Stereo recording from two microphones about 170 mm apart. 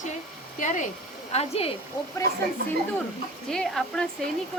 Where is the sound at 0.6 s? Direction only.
50° left (ahead or behind).